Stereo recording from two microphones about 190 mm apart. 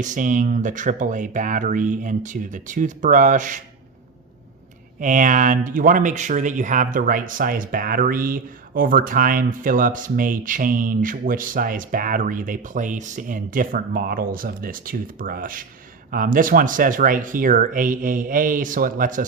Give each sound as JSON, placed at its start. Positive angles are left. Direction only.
{"t": 0.0, "sound": "speech", "side_deg": -40}
{"t": 4.9, "sound": "speech", "side_deg": -40}